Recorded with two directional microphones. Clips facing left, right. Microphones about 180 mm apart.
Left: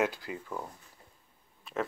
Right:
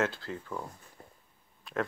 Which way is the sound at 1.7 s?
Centre (ahead or behind).